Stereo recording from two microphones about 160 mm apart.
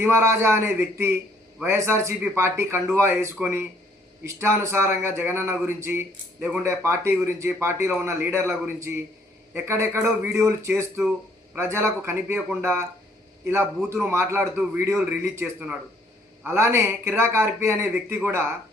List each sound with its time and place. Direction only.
0.0 s a man's voice: 15° right (ahead or behind)